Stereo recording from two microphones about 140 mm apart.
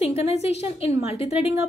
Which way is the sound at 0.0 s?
50° left (ahead or behind).